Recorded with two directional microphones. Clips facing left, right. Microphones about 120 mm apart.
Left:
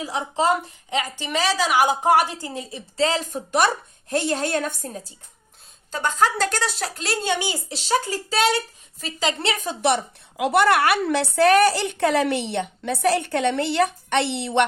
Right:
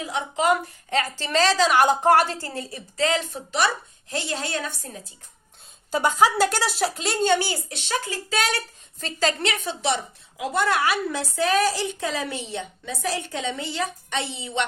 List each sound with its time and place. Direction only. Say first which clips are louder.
0.0 s speech: left 1 dB; 35° left (ahead or behind)
0.9 s a woman's voice: right 1 dB; 15° left (ahead or behind); by 3.2 s 30° left (ahead or behind)
3.3 s a woman's voice: left 3 dB; 50° left (ahead or behind)
5.9 s a woman's voice: right 2 dB; 10° right (ahead or behind); by 7.6 s 15° left (ahead or behind)
7.7 s speech: left 5 dB; 35° left (ahead or behind)
9.0 s a woman's voice: right 1 dB; 10° left (ahead or behind)
9.4 s speech: left 2 dB; 35° left (ahead or behind)
9.8 s a woman's voice: left 6 dB; 65° left (ahead or behind)